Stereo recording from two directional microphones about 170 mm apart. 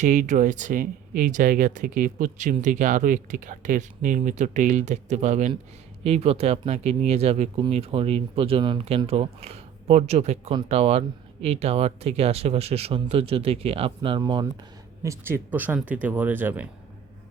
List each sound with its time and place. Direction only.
0.0 s speech: 45° right (ahead or behind); by 14.4 s 30° right (ahead or behind)
15.0 s speech: 15° right (ahead or behind)